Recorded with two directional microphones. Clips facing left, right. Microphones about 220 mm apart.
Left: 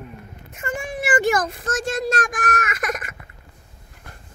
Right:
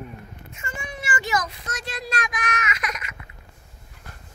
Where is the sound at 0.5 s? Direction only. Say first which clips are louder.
Left 8 dB; 50° left (ahead or behind).